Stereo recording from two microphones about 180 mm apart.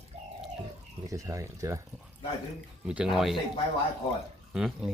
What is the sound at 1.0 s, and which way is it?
Speech, 20° right (ahead or behind).